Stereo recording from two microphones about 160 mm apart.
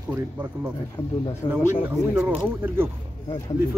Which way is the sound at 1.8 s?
5° right (ahead or behind).